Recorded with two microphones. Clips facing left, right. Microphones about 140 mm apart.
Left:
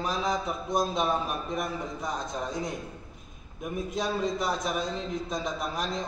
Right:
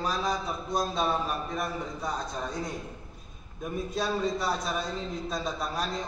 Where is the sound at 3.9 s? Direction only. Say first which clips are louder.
Even; 20° left (ahead or behind).